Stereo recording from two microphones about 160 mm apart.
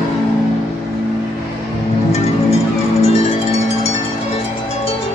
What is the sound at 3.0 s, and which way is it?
Music, 40° left (ahead or behind).